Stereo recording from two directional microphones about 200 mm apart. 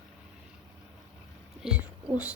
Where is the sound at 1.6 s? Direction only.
5° right (ahead or behind).